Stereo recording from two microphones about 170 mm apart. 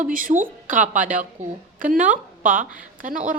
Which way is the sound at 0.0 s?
55° right (ahead or behind).